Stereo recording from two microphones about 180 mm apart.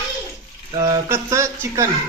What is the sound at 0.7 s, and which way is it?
Speech, 20° right (ahead or behind).